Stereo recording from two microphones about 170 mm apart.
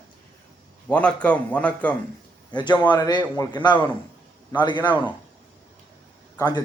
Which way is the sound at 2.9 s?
25° left (ahead or behind).